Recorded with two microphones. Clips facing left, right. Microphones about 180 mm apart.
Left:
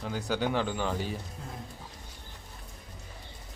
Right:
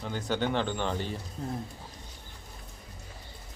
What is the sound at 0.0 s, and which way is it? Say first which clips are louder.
Speech: even; 5° left (ahead or behind).